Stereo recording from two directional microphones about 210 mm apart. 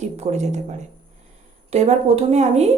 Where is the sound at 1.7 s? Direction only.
30° right (ahead or behind).